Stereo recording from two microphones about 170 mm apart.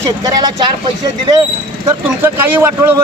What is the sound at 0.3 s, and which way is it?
Speech, 25° right (ahead or behind).